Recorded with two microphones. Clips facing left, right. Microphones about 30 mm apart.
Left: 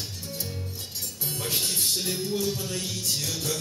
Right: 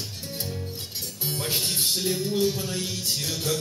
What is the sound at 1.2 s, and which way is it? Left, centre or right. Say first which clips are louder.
Music: right 2 dB; right.